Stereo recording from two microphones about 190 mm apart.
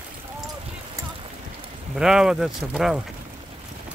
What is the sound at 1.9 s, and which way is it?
Speech, 5° right (ahead or behind).